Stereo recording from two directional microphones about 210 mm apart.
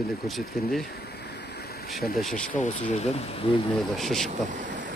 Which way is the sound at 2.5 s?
35° left (ahead or behind).